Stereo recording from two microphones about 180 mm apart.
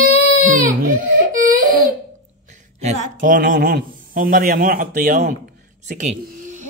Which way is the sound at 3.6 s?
50° right (ahead or behind).